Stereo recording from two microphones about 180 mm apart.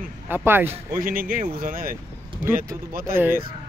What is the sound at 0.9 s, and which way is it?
Speech, 50° right (ahead or behind).